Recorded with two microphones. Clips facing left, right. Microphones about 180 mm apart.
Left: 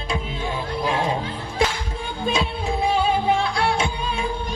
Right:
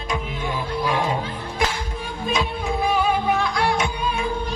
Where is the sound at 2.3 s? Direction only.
30° left (ahead or behind).